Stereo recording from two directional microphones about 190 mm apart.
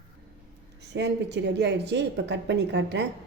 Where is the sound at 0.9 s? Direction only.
65° right (ahead or behind).